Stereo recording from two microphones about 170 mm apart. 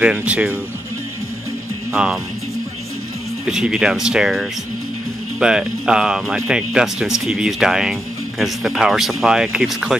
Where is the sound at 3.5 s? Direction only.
5° right (ahead or behind).